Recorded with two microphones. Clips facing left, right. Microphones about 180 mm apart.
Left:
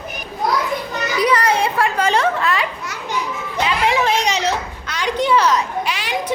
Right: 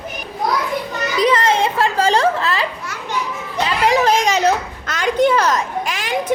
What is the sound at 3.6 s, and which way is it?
Children playing, 40° right (ahead or behind).